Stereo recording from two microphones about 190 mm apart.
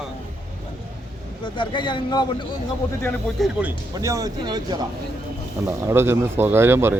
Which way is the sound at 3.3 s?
Centre (ahead or behind).